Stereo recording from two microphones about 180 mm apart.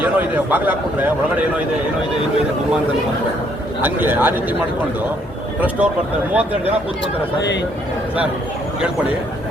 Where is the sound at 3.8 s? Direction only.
10° right (ahead or behind).